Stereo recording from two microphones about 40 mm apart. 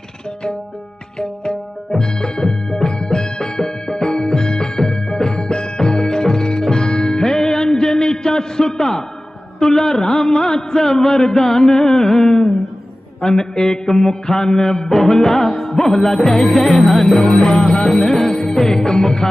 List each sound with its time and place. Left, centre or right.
1.2 s music: centre
9.6 s mantra: centre
17.2 s music: left